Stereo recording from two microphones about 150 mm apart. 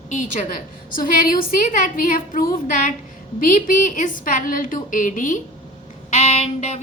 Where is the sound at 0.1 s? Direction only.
55° left (ahead or behind).